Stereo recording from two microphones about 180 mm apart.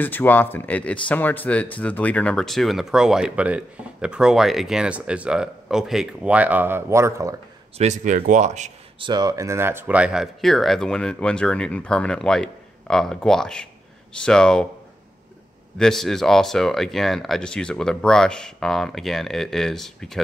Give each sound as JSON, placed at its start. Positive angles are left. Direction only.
{"t": 0.0, "sound": "speech", "side_deg": 10}
{"t": 7.7, "sound": "speech", "side_deg": -40}
{"t": 9.0, "sound": "speech", "side_deg": -25}
{"t": 15.8, "sound": "speech", "side_deg": 0}